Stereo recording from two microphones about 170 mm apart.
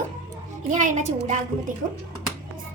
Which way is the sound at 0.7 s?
45° right (ahead or behind).